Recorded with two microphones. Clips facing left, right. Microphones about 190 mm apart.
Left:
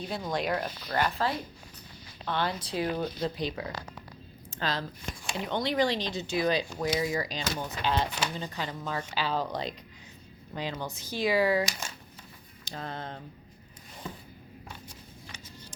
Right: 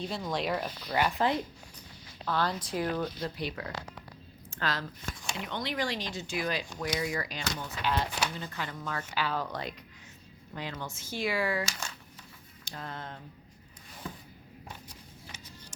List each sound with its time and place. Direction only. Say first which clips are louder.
0.0 s speech: left 1 dB; centre (ahead or behind)
0.9 s speech: right 1 dB; 10° right (ahead or behind)
2.2 s speech: even; centre (ahead or behind)
2.6 s speech: left 1 dB; 25° left (ahead or behind)
5.4 s speech: left 7 dB; 30° left (ahead or behind)
7.3 s a woman's voice: left 3 dB; 40° left (ahead or behind)
7.9 s speech: left 1 dB; 25° left (ahead or behind)
10.5 s a woman's voice: left 4 dB; 30° left (ahead or behind)
11.2 s speech: left 5 dB; 20° left (ahead or behind)